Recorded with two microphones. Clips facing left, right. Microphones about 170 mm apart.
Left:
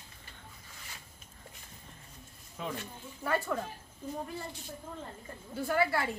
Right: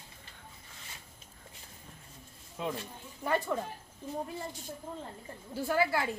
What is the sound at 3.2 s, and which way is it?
Speech, 15° right (ahead or behind).